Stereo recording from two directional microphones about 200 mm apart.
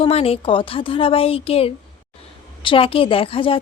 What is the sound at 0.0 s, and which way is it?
Speech, 30° left (ahead or behind).